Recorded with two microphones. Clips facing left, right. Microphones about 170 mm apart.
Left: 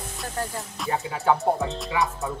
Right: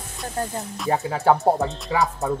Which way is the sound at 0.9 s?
40° right (ahead or behind).